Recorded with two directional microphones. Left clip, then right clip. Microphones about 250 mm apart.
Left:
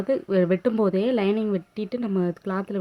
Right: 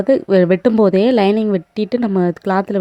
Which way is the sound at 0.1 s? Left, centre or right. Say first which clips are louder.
Right 9 dB; right.